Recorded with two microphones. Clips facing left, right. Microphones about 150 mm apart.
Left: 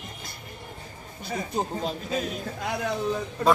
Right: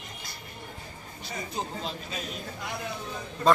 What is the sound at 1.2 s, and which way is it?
Speech, 50° left (ahead or behind).